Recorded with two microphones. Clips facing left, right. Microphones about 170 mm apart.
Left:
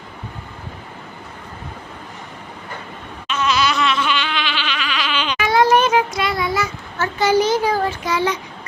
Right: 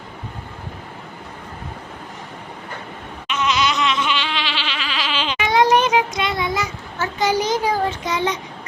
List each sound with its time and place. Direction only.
3.2 s goat: 20° right (ahead or behind)